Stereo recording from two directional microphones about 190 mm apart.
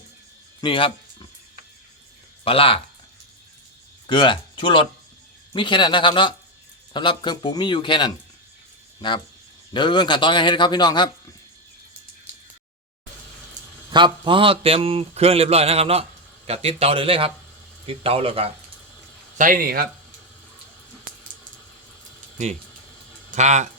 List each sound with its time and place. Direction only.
0.6 s a sound: 25° left (ahead or behind)
2.4 s speech: 30° left (ahead or behind)
4.0 s a man's voice: 25° left (ahead or behind)
13.9 s speech: 25° right (ahead or behind)
19.4 s speech: 45° right (ahead or behind)
23.3 s speech: 40° right (ahead or behind)